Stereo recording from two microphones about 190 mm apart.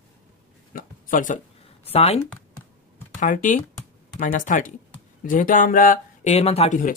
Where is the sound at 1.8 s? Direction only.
30° left (ahead or behind).